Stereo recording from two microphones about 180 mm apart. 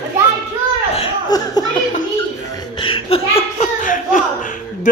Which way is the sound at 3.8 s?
45° left (ahead or behind).